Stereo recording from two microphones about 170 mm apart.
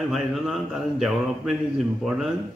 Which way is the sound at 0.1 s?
Centre (ahead or behind).